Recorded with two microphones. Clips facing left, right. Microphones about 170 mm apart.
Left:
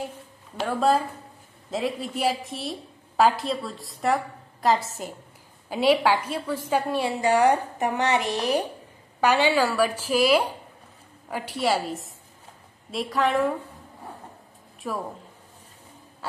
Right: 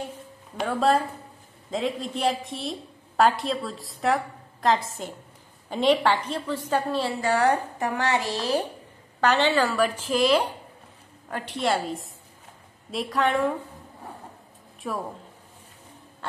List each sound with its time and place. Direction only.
0.6 s a woman's voice: centre (ahead or behind)
14.8 s a woman's voice: centre (ahead or behind)